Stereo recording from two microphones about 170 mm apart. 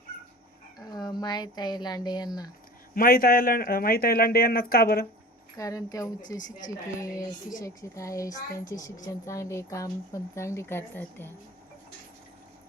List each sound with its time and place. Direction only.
1.2 s speech: 25° left (ahead or behind)
2.9 s speech: 60° left (ahead or behind)
5.5 s speech: 20° left (ahead or behind)
7.6 s a woman's voice: 20° left (ahead or behind)